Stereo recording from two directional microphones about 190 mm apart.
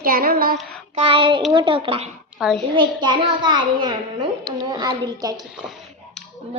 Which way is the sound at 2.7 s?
25° right (ahead or behind).